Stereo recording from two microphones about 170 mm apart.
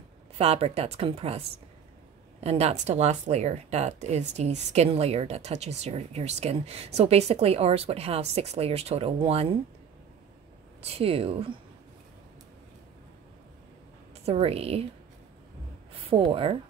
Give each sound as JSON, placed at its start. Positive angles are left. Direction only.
{"t": 0.4, "sound": "a woman's voice", "side_deg": -35}
{"t": 2.4, "sound": "a woman's voice", "side_deg": -40}
{"t": 10.8, "sound": "a woman's voice", "side_deg": -35}
{"t": 14.2, "sound": "a woman's voice", "side_deg": -35}
{"t": 15.9, "sound": "speech", "side_deg": -30}